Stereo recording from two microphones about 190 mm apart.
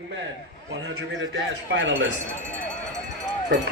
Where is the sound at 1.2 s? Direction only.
75° right (ahead or behind).